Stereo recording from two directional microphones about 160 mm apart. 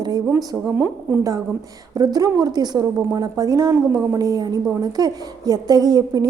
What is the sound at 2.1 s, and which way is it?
A woman's voice, 25° right (ahead or behind).